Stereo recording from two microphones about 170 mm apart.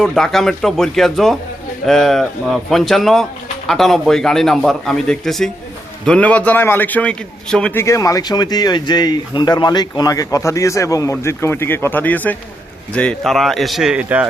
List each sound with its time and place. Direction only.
0.0 s a man's voice: centre (ahead or behind)